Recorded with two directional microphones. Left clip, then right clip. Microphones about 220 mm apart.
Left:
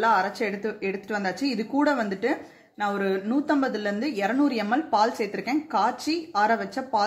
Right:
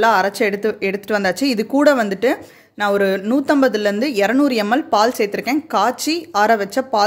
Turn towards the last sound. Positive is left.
turn(degrees=-50)  # may be behind; listen again after turning